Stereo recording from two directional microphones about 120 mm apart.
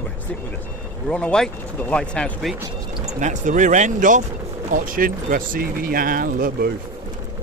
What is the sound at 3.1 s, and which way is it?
Speech, 90° right.